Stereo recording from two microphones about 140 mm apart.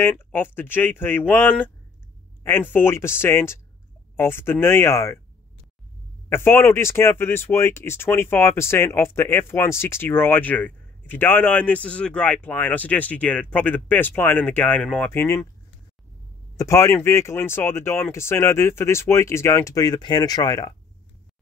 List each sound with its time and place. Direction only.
0.0 s speech: 15° left (ahead or behind)
6.2 s speech: 15° left (ahead or behind)
16.5 s speech: 20° left (ahead or behind)